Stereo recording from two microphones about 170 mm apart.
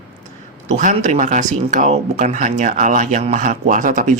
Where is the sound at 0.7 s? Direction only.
50° right (ahead or behind).